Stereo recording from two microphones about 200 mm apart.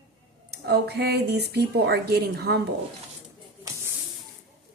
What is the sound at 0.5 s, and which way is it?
Speech, 55° right (ahead or behind).